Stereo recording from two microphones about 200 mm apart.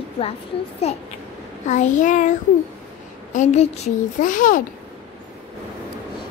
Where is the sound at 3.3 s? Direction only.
35° left (ahead or behind).